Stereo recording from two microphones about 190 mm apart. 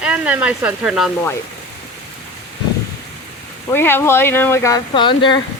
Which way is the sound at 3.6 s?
10° left (ahead or behind).